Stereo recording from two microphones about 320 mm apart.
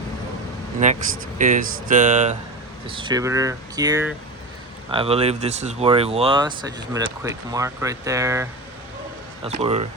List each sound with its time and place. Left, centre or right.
0.8 s speech: right